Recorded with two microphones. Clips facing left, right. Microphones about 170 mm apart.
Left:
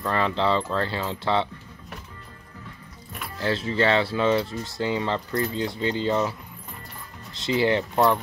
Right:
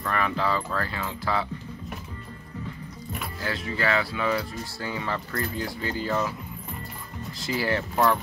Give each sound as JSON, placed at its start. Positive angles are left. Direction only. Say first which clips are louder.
{"t": 0.0, "sound": "speech", "louder": "left 3 dB", "side_deg": 25}
{"t": 3.3, "sound": "speech", "louder": "left 7 dB", "side_deg": 30}
{"t": 7.4, "sound": "speech", "louder": "left 5 dB", "side_deg": 20}